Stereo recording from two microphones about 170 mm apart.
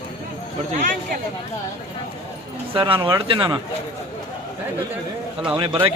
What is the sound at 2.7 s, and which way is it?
Speech, 30° right (ahead or behind).